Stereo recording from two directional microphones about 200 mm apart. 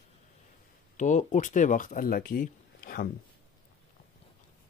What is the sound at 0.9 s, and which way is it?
Speech, 40° left (ahead or behind).